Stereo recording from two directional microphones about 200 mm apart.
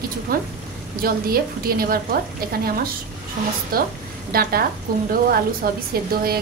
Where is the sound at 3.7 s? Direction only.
45° right (ahead or behind).